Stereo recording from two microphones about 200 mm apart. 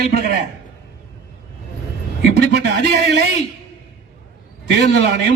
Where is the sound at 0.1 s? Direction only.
45° right (ahead or behind).